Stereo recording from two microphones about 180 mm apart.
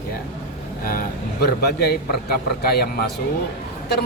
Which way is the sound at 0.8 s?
55° left (ahead or behind).